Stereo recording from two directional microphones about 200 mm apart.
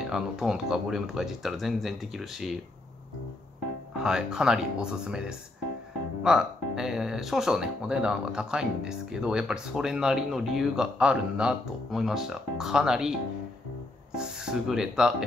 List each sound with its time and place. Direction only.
0.0 s speech: 5° right (ahead or behind)
4.0 s speech: 5° right (ahead or behind)
14.1 s speech: 5° right (ahead or behind)